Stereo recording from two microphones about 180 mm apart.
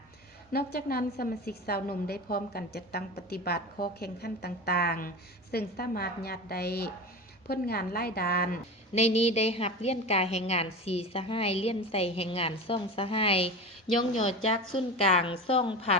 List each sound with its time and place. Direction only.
0.5 s a woman's voice: 60° left (ahead or behind)
9.0 s a woman's voice: 35° left (ahead or behind)